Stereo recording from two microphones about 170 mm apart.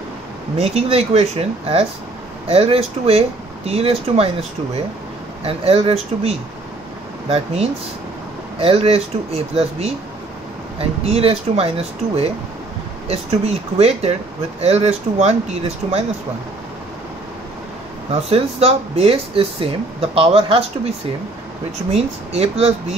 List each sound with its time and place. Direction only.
0.6 s speech: 40° right (ahead or behind)
5.4 s speech: 35° right (ahead or behind)
18.3 s speech: 35° right (ahead or behind)
21.9 s speech: 35° right (ahead or behind)